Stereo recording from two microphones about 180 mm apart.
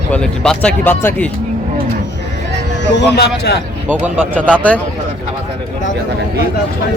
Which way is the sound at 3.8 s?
5° right (ahead or behind).